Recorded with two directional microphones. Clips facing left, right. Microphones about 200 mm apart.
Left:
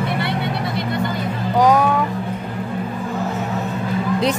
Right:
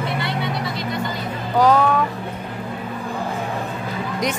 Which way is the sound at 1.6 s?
15° left (ahead or behind).